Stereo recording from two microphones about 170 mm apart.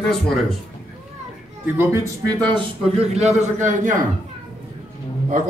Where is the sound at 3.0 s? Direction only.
40° right (ahead or behind).